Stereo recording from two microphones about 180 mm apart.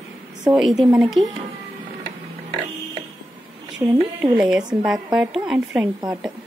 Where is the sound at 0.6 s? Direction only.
Centre (ahead or behind).